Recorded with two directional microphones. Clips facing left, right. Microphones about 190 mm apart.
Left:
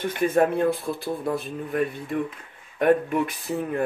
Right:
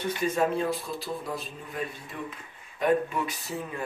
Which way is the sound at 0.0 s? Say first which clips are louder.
Left 5 dB; 55° left (ahead or behind).